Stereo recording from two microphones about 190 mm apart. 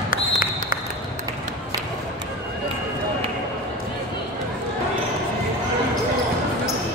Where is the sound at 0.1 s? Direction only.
50° left (ahead or behind).